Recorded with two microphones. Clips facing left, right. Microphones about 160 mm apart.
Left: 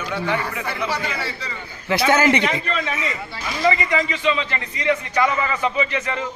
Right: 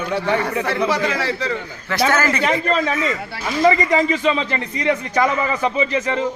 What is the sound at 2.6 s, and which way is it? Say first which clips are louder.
A man's voice: right 6 dB; 40° right (ahead or behind).